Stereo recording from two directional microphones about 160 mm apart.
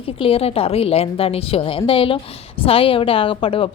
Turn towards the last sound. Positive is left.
turn(degrees=35)  # may be behind; listen again after turning